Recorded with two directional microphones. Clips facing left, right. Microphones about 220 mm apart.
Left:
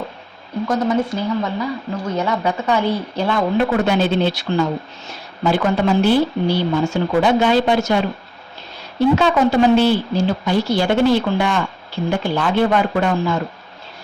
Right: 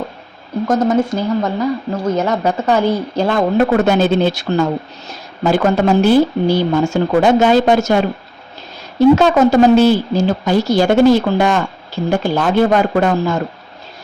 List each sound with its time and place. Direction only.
0.7 s a woman's voice: 45° right (ahead or behind)
9.1 s a woman's voice: 45° right (ahead or behind)